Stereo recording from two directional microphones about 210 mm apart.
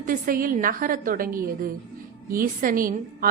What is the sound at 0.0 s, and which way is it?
A woman's voice, 40° right (ahead or behind).